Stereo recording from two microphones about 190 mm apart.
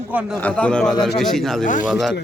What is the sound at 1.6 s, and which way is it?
Speech, 40° left (ahead or behind).